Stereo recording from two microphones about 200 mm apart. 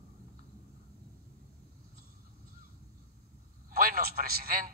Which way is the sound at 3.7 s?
45° right (ahead or behind).